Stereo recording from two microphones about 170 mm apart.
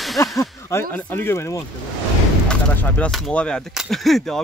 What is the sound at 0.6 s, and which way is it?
Speech, 15° left (ahead or behind).